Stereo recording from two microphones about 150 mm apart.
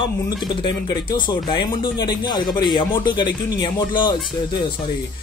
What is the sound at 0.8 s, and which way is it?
Speech, 30° left (ahead or behind).